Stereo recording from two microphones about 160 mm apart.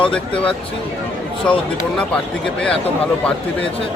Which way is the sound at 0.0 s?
5° left (ahead or behind).